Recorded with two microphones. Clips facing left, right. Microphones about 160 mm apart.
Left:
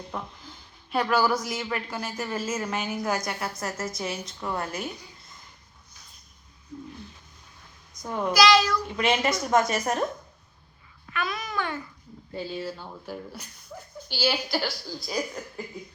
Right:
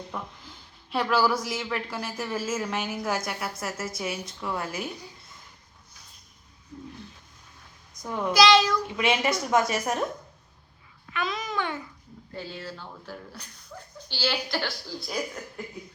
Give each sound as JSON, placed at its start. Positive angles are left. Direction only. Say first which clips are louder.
{"t": 0.1, "sound": "a woman's voice", "louder": "left 1 dB", "side_deg": 5}
{"t": 8.0, "sound": "speech", "louder": "left 1 dB", "side_deg": 5}
{"t": 8.3, "sound": "babbling", "louder": "right 1 dB", "side_deg": -25}
{"t": 9.0, "sound": "a woman's voice", "louder": "left 1 dB", "side_deg": -10}
{"t": 11.1, "sound": "babbling", "louder": "right 1 dB", "side_deg": -20}
{"t": 12.3, "sound": "a woman's voice", "louder": "left 5 dB", "side_deg": 15}